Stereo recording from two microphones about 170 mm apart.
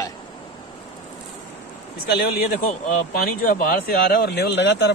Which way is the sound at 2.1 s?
60° left (ahead or behind).